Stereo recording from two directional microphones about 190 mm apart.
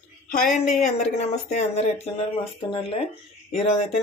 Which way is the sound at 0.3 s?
40° left (ahead or behind).